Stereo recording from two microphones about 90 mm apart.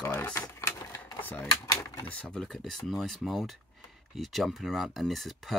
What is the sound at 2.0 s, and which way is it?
Speech, 10° left (ahead or behind).